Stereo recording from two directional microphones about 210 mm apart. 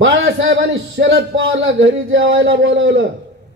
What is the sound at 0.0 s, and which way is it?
A man's voice, 65° right (ahead or behind).